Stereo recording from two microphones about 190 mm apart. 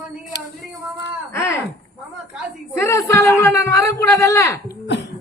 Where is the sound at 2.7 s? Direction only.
15° left (ahead or behind).